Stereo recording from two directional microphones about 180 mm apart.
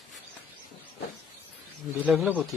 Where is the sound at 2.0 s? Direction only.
5° right (ahead or behind).